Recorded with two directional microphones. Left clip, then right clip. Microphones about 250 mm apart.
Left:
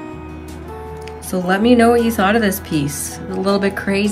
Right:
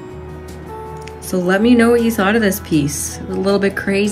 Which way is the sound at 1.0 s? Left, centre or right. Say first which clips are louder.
Right 3 dB; centre.